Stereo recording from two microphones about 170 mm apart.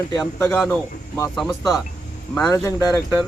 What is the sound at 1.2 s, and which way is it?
Speech, centre (ahead or behind).